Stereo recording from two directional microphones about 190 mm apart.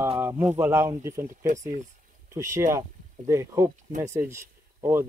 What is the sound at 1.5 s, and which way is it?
Speech, 40° right (ahead or behind).